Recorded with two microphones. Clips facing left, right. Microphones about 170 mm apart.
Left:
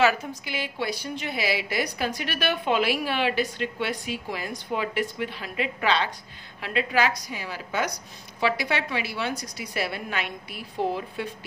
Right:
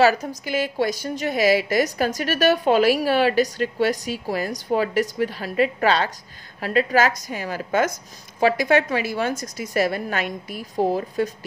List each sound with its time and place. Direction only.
0.0 s a woman's voice: 40° right (ahead or behind)